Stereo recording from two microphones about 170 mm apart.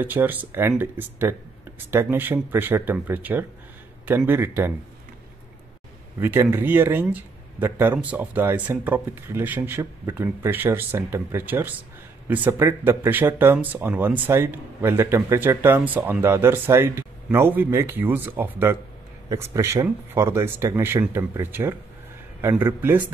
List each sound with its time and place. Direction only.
0.0 s speech: 10° right (ahead or behind)
6.1 s speech: 15° right (ahead or behind)